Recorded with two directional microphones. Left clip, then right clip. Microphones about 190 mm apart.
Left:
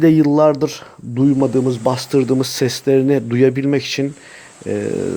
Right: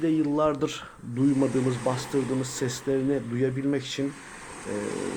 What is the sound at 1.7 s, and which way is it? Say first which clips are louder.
Speech: left 10 dB; 35° left (ahead or behind).